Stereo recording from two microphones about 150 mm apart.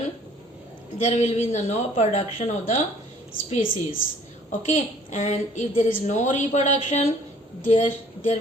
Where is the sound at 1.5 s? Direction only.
50° left (ahead or behind).